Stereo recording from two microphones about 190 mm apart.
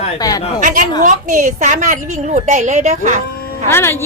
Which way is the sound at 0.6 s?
45° right (ahead or behind).